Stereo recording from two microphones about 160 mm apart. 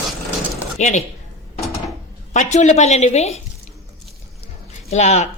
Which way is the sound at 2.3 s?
45° left (ahead or behind).